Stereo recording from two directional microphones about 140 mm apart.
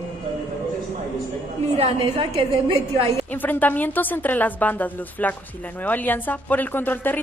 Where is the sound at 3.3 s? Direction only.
10° left (ahead or behind).